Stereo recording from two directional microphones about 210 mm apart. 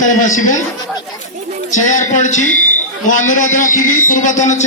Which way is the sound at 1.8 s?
35° left (ahead or behind).